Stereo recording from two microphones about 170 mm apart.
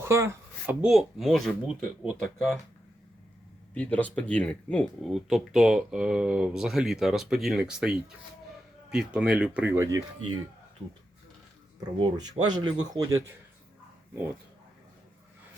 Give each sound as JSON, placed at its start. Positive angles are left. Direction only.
{"t": 0.0, "sound": "speech", "side_deg": -15}
{"t": 3.8, "sound": "speech", "side_deg": 10}
{"t": 11.8, "sound": "speech", "side_deg": -25}